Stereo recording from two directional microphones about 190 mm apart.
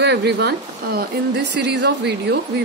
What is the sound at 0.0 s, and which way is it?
A woman's voice, 60° right (ahead or behind).